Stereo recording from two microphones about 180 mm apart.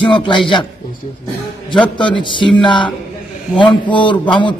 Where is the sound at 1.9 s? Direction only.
25° left (ahead or behind).